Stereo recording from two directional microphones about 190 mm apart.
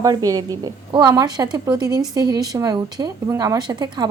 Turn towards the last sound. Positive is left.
turn(degrees=-25)  # may be behind; listen again after turning